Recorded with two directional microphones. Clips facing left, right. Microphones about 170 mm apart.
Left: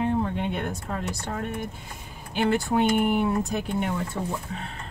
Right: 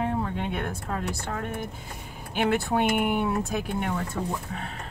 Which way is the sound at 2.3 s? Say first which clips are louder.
Left 1 dB; 5° right (ahead or behind).